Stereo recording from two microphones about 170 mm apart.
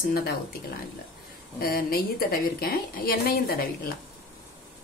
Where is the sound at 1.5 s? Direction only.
60° left (ahead or behind).